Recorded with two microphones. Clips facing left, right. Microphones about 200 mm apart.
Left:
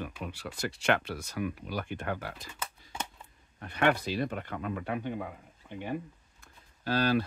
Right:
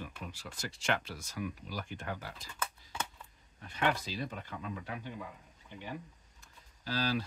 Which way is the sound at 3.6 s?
60° left (ahead or behind).